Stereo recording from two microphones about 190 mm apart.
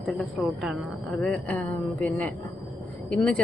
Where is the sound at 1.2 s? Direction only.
5° left (ahead or behind).